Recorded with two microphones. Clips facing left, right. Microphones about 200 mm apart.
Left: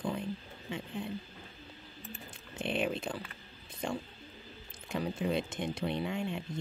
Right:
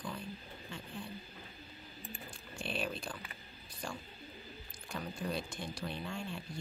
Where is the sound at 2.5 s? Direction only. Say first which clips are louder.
Left 6 dB; 20° left (ahead or behind).